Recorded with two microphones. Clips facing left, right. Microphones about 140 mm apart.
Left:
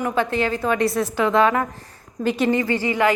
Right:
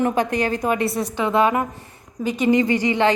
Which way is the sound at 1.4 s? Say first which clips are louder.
Even; 15° right (ahead or behind).